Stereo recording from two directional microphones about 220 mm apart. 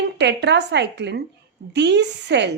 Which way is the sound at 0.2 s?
50° right (ahead or behind).